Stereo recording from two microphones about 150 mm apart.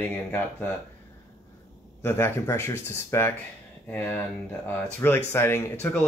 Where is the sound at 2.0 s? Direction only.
15° left (ahead or behind).